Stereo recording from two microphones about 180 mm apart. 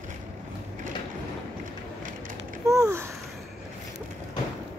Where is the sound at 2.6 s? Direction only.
20° right (ahead or behind).